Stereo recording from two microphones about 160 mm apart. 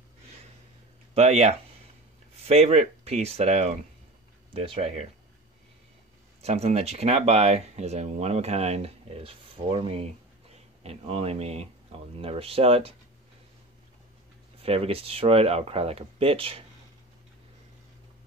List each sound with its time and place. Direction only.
1.1 s speech: 40° right (ahead or behind)
6.4 s speech: 40° right (ahead or behind)
14.6 s speech: 35° right (ahead or behind)